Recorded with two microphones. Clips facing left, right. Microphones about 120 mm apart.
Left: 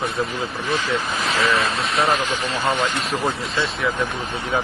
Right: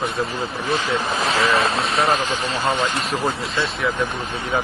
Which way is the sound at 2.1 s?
40° right (ahead or behind).